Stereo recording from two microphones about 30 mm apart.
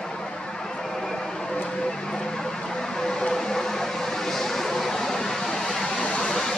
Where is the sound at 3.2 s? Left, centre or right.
Left.